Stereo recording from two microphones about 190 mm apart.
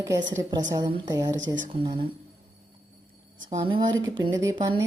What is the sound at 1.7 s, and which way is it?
Speech, 30° right (ahead or behind).